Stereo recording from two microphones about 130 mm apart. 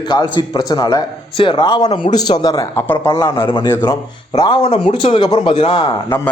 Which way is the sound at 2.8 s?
15° left (ahead or behind).